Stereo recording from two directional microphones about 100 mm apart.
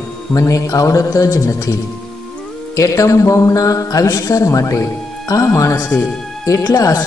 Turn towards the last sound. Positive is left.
turn(degrees=35)  # may be behind; listen again after turning